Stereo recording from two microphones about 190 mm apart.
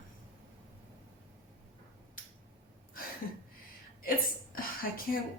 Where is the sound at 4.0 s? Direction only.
50° left (ahead or behind).